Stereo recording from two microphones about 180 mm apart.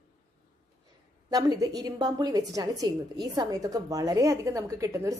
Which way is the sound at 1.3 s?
20° right (ahead or behind).